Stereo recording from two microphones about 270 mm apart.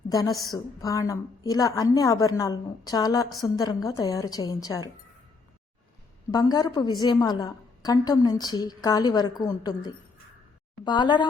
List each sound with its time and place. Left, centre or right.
0.1 s a woman's voice: centre
6.3 s a woman's voice: centre